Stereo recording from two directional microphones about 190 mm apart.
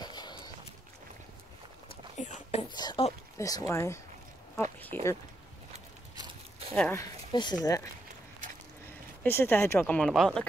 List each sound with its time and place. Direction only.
0.0 s walk: 20° left (ahead or behind)
1.9 s a sound: 40° left (ahead or behind)
2.7 s speech: 20° left (ahead or behind)
6.7 s speech: 5° left (ahead or behind)
7.0 s speech: 20° left (ahead or behind)
9.2 s speech: 10° left (ahead or behind)